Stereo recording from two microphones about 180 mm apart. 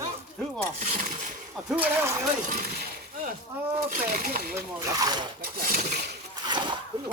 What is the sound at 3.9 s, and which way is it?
Speech, 50° right (ahead or behind).